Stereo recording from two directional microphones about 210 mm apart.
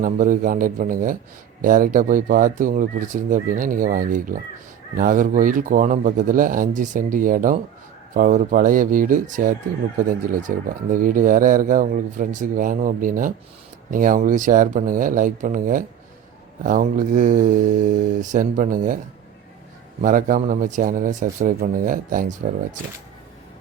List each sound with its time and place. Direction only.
0.0 s speech: 40° right (ahead or behind)
20.0 s speech: 40° right (ahead or behind)